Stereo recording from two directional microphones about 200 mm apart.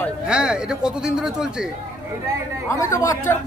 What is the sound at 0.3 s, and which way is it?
A man's voice, 5° right (ahead or behind).